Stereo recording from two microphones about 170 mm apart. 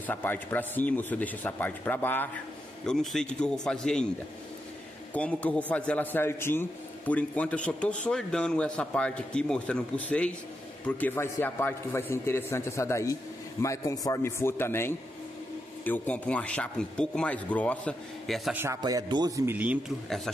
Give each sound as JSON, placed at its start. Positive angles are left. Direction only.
{"t": 0.0, "sound": "a man's voice", "side_deg": 10}
{"t": 5.1, "sound": "a man's voice", "side_deg": 10}
{"t": 18.6, "sound": "a man's voice", "side_deg": -20}